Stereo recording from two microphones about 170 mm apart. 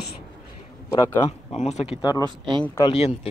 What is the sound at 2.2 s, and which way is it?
Speech, 25° right (ahead or behind).